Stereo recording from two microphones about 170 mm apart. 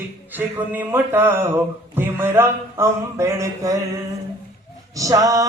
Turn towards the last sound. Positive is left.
turn(degrees=-20)  # may be behind; listen again after turning